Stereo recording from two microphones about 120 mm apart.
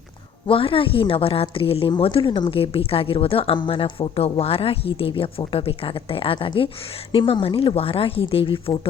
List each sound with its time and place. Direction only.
0.4 s speech: 50° left (ahead or behind)